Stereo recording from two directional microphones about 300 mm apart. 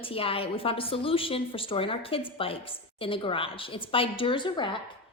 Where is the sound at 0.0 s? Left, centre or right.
Centre.